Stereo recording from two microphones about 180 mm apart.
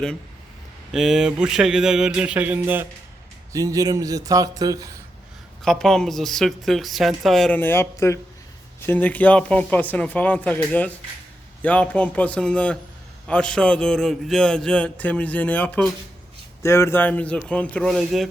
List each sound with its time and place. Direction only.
0.9 s a man's voice: 5° right (ahead or behind); by 4.9 s 20° right (ahead or behind)
5.6 s a man's voice: 5° left (ahead or behind)